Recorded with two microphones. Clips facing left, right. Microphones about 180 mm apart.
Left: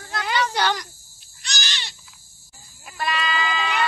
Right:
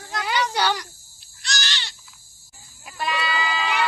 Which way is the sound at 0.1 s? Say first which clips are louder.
Even; 10° right (ahead or behind).